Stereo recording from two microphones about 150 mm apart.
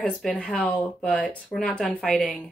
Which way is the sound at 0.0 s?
5° left (ahead or behind).